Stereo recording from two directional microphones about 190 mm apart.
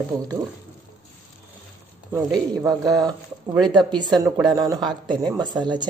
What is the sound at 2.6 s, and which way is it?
Speech, 20° right (ahead or behind).